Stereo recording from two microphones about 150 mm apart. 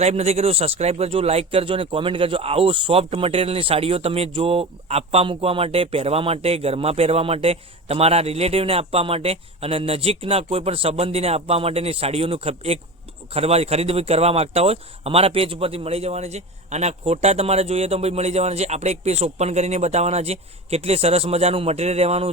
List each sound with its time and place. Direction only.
0.0 s speech: 45° right (ahead or behind)